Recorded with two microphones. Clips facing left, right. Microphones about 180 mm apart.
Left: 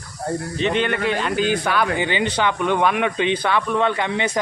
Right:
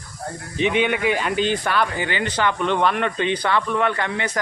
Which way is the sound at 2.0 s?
20° left (ahead or behind).